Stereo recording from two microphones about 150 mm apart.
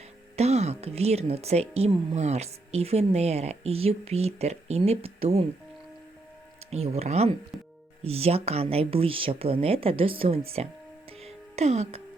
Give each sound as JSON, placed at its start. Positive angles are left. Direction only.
{"t": 0.3, "sound": "speech", "side_deg": -45}
{"t": 6.7, "sound": "speech", "side_deg": -45}
{"t": 11.2, "sound": "music", "side_deg": -45}